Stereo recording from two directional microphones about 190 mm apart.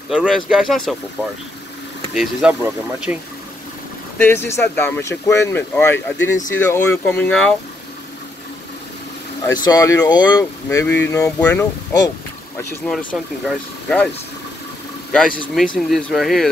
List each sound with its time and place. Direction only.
0.1 s speech: 5° right (ahead or behind)
2.1 s speech: 5° right (ahead or behind)
4.2 s speech: 10° left (ahead or behind)
9.6 s speech: 20° left (ahead or behind)
15.5 s speech: centre (ahead or behind)